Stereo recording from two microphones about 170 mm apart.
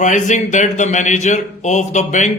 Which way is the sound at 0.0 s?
45° left (ahead or behind).